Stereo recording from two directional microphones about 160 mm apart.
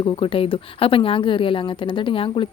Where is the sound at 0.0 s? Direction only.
35° left (ahead or behind).